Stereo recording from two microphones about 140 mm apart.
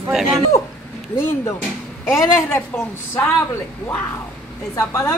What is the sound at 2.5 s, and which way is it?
Speech, 15° left (ahead or behind).